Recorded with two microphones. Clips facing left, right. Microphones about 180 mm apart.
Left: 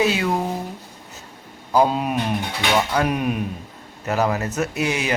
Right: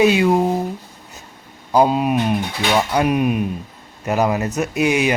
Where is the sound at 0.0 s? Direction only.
15° right (ahead or behind).